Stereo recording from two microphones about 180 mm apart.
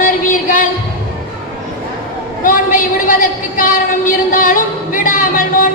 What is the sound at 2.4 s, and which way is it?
A woman's voice, 50° left (ahead or behind).